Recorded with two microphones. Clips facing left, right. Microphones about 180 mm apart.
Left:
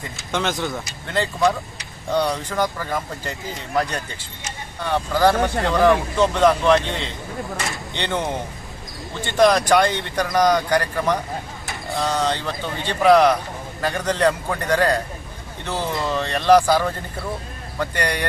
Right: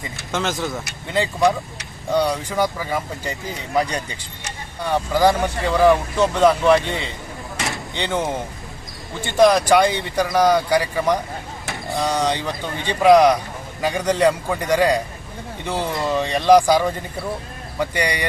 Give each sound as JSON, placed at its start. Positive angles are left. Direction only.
{"t": 0.3, "sound": "speech", "side_deg": 0}
{"t": 1.0, "sound": "speech", "side_deg": -15}
{"t": 11.7, "sound": "mechanisms", "side_deg": 0}
{"t": 12.0, "sound": "speech", "side_deg": -15}